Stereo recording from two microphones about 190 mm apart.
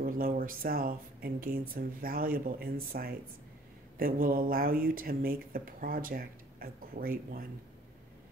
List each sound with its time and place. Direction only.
0.0 s speech: 50° right (ahead or behind)